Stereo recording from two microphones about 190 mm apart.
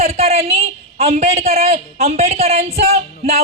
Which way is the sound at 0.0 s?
35° right (ahead or behind).